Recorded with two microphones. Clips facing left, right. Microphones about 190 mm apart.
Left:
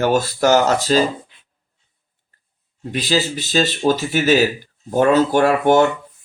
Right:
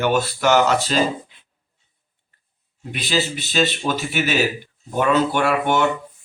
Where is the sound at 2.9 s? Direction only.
40° left (ahead or behind).